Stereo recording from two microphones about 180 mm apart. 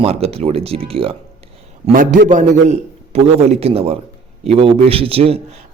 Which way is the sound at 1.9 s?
55° right (ahead or behind).